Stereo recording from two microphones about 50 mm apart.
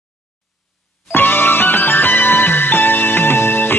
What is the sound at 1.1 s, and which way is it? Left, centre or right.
Music, left.